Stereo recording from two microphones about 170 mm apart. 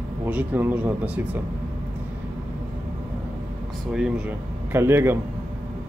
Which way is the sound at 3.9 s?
5° right (ahead or behind).